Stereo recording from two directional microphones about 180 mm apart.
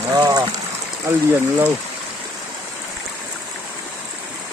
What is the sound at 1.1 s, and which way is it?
Speech, 15° right (ahead or behind).